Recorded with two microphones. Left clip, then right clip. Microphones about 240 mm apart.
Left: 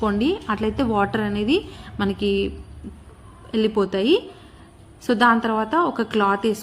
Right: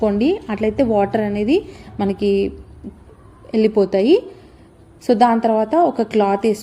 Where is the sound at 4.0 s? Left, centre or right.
Left.